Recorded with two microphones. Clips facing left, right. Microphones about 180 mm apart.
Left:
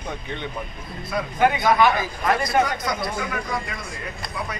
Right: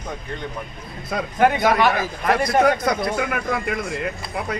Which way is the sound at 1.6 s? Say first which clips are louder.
Right 1 dB; 60° right (ahead or behind).